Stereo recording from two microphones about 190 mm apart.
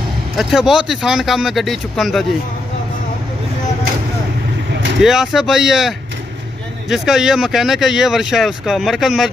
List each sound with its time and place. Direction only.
0.4 s speech: centre (ahead or behind)
5.0 s speech: centre (ahead or behind)